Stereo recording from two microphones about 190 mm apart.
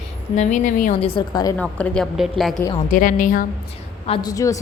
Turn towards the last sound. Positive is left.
turn(degrees=15)  # may be behind; listen again after turning